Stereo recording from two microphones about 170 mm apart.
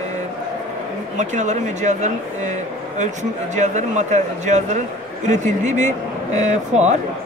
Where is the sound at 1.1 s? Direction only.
45° right (ahead or behind).